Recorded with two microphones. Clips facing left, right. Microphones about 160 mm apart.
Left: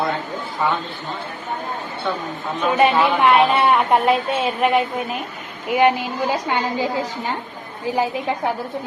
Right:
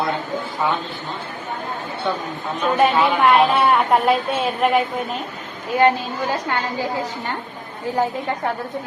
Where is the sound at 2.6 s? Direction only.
5° left (ahead or behind).